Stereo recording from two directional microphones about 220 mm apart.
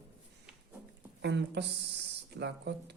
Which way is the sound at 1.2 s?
50° right (ahead or behind).